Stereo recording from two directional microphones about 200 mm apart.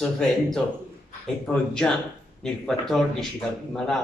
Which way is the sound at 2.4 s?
Centre (ahead or behind).